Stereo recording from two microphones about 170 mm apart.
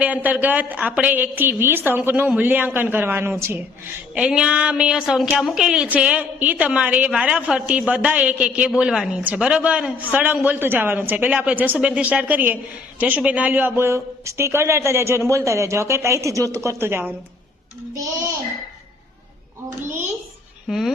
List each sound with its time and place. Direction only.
0.0 s a woman's voice: 10° right (ahead or behind)
20.7 s speech: centre (ahead or behind)